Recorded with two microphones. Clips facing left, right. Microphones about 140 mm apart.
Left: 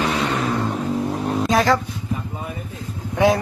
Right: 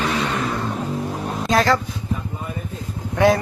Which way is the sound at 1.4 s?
5° left (ahead or behind).